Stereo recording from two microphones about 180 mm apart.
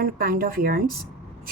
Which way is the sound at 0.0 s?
55° right (ahead or behind).